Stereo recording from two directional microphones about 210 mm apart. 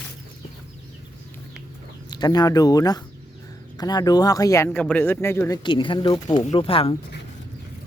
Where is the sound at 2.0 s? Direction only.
20° left (ahead or behind).